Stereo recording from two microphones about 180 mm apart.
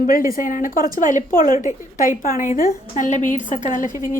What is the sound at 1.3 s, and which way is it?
Speech, 20° right (ahead or behind).